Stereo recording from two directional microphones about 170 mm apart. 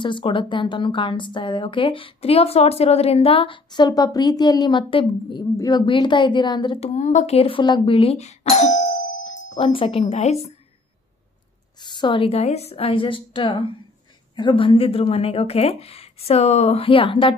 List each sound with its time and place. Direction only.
0.0 s a woman's voice: 30° left (ahead or behind)
6.9 s speech: 45° left (ahead or behind)
11.8 s speech: 25° left (ahead or behind)